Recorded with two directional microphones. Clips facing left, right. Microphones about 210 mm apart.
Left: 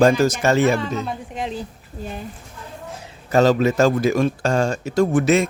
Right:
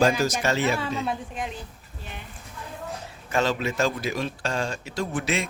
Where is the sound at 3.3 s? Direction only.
40° left (ahead or behind).